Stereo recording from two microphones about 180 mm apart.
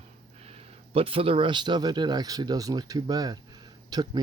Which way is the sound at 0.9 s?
30° right (ahead or behind).